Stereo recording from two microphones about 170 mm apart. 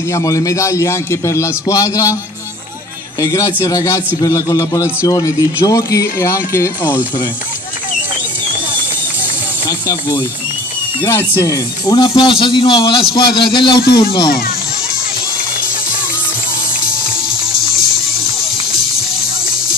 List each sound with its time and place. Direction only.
0.1 s a man's voice: 20° left (ahead or behind)
3.2 s a man's voice: 20° left (ahead or behind)
9.7 s a man's voice: 15° left (ahead or behind)